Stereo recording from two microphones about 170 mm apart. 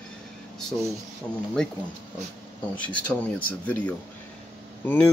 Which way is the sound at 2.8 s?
10° left (ahead or behind).